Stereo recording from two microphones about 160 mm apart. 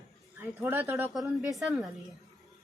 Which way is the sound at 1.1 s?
Centre (ahead or behind).